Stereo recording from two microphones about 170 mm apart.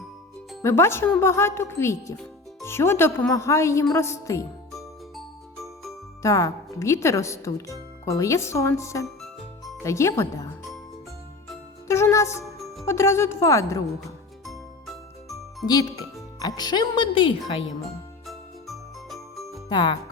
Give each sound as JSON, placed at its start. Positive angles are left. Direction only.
{"t": 0.6, "sound": "speech", "side_deg": 15}
{"t": 4.7, "sound": "music", "side_deg": 0}
{"t": 6.2, "sound": "speech", "side_deg": 20}
{"t": 11.9, "sound": "speech", "side_deg": 15}
{"t": 12.5, "sound": "music", "side_deg": 0}
{"t": 12.8, "sound": "speech", "side_deg": 15}
{"t": 14.4, "sound": "music", "side_deg": 0}
{"t": 15.6, "sound": "speech", "side_deg": 25}
{"t": 18.3, "sound": "music", "side_deg": 0}
{"t": 19.6, "sound": "speech", "side_deg": 25}